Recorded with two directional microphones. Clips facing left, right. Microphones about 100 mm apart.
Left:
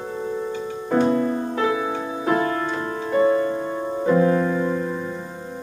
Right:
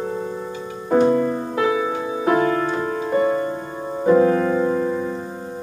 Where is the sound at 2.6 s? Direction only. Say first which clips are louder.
Right 3 dB; 20° right (ahead or behind).